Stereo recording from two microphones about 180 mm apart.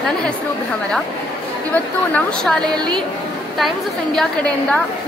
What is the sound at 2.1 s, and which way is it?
Speech, 5° left (ahead or behind).